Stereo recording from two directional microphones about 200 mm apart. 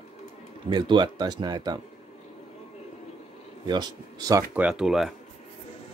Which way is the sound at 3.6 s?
20° right (ahead or behind).